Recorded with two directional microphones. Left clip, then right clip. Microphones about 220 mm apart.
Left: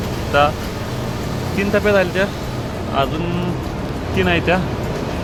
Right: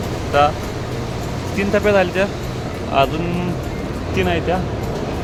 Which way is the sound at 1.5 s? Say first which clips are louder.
Even; centre (ahead or behind).